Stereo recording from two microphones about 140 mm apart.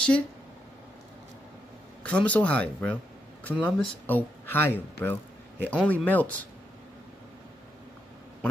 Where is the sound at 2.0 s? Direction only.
10° left (ahead or behind).